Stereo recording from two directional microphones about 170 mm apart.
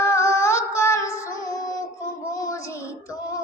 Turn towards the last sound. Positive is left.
turn(degrees=20)  # may be behind; listen again after turning